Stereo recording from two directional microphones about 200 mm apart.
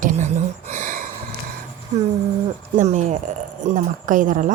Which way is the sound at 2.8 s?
35° right (ahead or behind).